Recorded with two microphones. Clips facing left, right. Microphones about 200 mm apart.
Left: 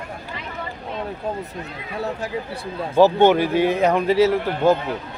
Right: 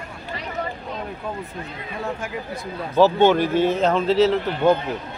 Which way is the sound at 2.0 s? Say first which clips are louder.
Left 2 dB; 35° left (ahead or behind).